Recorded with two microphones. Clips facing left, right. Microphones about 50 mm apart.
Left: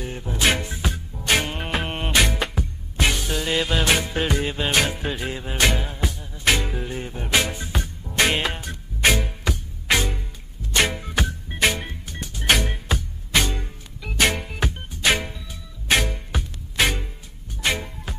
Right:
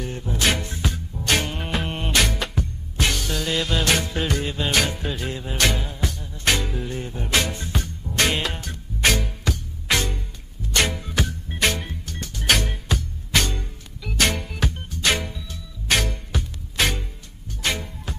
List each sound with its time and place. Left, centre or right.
0.0 s music: centre
1.2 s music: centre